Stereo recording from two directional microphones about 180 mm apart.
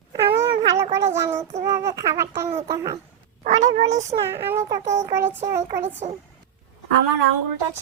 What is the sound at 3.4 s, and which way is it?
Speech, 40° right (ahead or behind).